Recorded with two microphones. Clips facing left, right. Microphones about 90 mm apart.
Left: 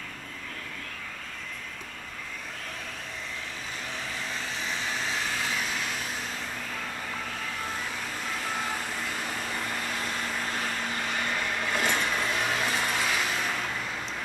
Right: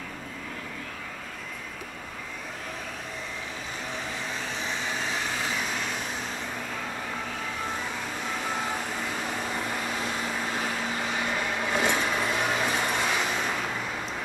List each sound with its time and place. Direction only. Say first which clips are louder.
9.2 s vehicle: right 2 dB; 5° right (ahead or behind)